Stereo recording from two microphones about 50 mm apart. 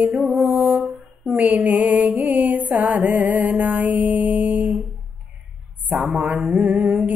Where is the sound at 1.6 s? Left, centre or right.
Right.